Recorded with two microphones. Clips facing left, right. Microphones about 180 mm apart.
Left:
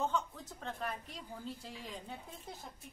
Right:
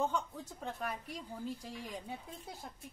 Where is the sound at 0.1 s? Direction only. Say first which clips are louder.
Even; 10° right (ahead or behind).